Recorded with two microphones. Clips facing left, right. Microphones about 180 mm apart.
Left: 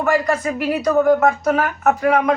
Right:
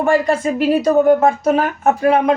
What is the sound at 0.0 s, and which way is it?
A woman's voice, 25° right (ahead or behind).